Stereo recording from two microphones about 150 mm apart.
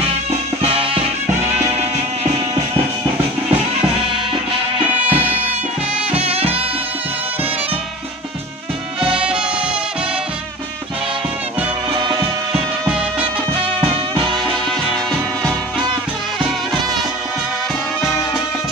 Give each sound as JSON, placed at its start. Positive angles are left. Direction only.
{"t": 0.6, "sound": "music", "side_deg": -40}
{"t": 5.1, "sound": "music", "side_deg": -35}
{"t": 9.1, "sound": "music", "side_deg": -5}
{"t": 13.6, "sound": "music", "side_deg": -40}